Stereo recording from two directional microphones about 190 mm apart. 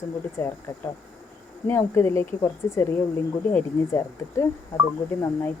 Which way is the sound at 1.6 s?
10° left (ahead or behind).